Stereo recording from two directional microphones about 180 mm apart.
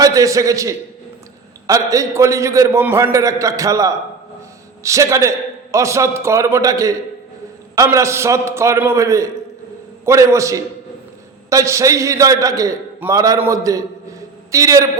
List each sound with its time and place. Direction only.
0.0 s a man's voice: 20° right (ahead or behind)